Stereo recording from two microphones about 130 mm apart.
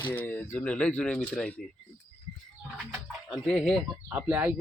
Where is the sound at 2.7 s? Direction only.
15° right (ahead or behind).